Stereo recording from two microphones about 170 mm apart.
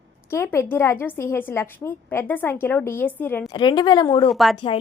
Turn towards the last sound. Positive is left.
turn(degrees=0)  # may be behind; listen again after turning